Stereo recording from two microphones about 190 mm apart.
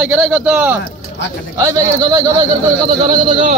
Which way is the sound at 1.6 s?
20° right (ahead or behind).